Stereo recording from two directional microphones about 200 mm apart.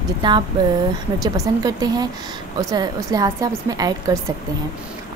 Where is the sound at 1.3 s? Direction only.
20° right (ahead or behind).